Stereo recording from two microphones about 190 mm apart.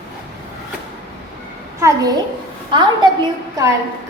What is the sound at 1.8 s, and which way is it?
Speech, 20° right (ahead or behind).